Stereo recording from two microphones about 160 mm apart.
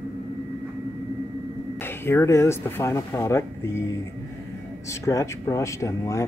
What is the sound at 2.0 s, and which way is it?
Speech, 15° left (ahead or behind).